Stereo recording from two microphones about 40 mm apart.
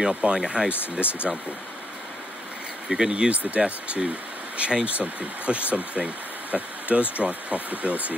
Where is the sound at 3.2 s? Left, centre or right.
Right.